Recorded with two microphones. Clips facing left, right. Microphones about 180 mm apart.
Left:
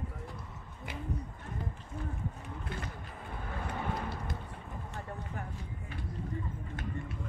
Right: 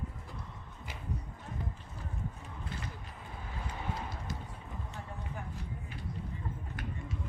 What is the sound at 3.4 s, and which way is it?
Vehicle, 55° left (ahead or behind).